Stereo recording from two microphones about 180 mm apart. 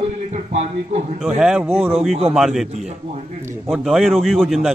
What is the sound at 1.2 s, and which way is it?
A man's voice, 5° right (ahead or behind).